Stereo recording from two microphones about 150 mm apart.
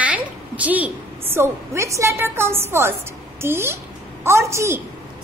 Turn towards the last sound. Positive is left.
turn(degrees=-20)  # may be behind; listen again after turning